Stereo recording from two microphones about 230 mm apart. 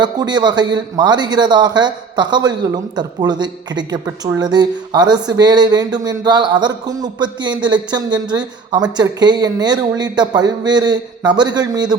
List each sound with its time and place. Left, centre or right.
0.0 s a man's voice: centre